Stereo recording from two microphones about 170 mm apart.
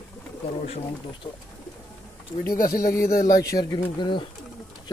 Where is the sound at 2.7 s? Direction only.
20° left (ahead or behind).